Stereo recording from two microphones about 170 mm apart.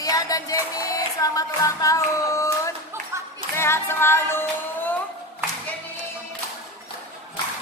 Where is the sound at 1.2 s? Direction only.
20° left (ahead or behind).